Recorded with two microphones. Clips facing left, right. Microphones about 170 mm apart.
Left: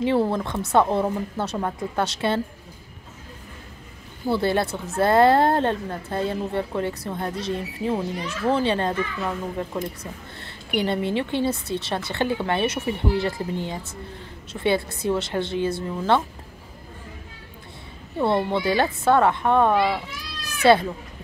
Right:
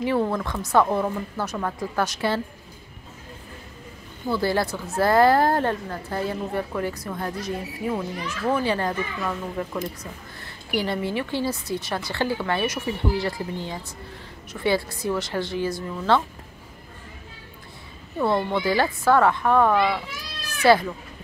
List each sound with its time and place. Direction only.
0.0 s a woman's voice: 25° left (ahead or behind)
4.3 s a woman's voice: 25° left (ahead or behind)
18.2 s a woman's voice: 25° left (ahead or behind)